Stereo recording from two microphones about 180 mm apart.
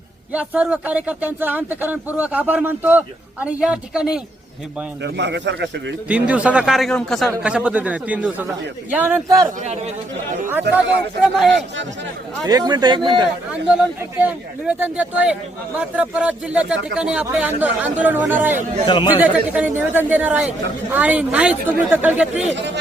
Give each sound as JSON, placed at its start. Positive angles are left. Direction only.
{"t": 0.3, "sound": "a man's voice", "side_deg": -5}
{"t": 5.0, "sound": "a man's voice", "side_deg": -75}
{"t": 6.1, "sound": "a man's voice", "side_deg": -10}
{"t": 10.8, "sound": "a man's voice", "side_deg": -5}
{"t": 12.5, "sound": "speech", "side_deg": -20}
{"t": 13.5, "sound": "a man's voice", "side_deg": -5}
{"t": 18.9, "sound": "speech", "side_deg": 25}
{"t": 19.1, "sound": "a man's voice", "side_deg": -10}
{"t": 22.5, "sound": "a man's voice", "side_deg": -75}